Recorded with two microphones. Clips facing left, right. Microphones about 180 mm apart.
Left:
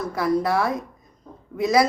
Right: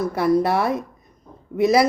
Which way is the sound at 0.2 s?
25° right (ahead or behind).